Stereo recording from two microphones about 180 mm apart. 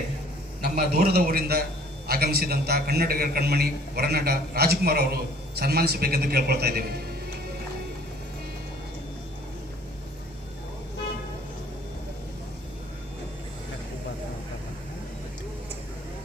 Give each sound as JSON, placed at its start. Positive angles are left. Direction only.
{"t": 0.6, "sound": "a man's voice", "side_deg": -60}